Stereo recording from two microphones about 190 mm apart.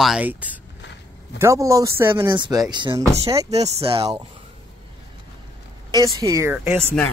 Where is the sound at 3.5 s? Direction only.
35° right (ahead or behind).